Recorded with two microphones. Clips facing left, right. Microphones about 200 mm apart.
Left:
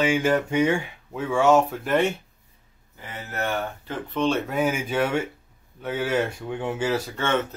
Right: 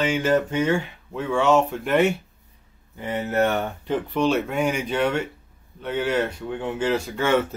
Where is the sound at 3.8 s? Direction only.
15° right (ahead or behind).